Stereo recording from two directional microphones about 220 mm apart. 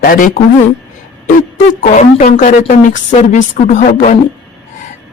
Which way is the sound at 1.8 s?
35° left (ahead or behind).